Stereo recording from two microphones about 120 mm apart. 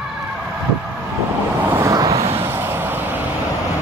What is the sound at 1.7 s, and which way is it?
Vehicle, 25° right (ahead or behind).